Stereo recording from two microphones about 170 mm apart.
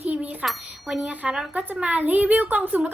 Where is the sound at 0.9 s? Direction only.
10° right (ahead or behind).